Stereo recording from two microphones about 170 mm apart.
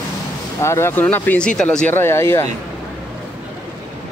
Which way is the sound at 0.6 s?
15° left (ahead or behind).